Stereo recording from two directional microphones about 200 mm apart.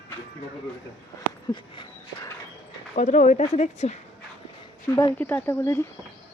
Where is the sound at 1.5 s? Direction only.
25° left (ahead or behind).